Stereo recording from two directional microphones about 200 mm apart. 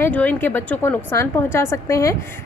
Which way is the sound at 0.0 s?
10° left (ahead or behind).